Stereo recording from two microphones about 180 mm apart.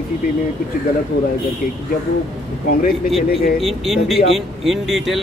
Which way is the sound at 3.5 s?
Centre (ahead or behind).